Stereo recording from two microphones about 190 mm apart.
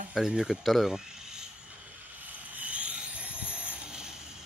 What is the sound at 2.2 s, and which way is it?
Vehicle, 10° right (ahead or behind).